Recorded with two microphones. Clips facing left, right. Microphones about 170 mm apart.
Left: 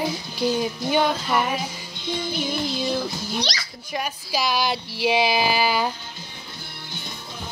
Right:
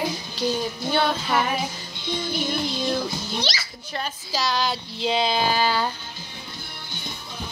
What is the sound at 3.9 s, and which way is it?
Speech, 10° left (ahead or behind).